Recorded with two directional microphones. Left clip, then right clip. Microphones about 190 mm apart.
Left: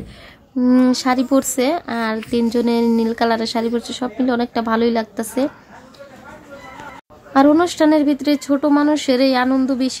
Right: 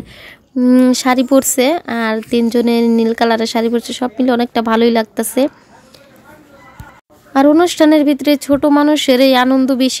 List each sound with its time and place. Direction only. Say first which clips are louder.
0.6 s speech: right 4 dB; 35° right (ahead or behind)
7.3 s speech: right 3 dB; 30° right (ahead or behind); by 9.9 s 50° right (ahead or behind)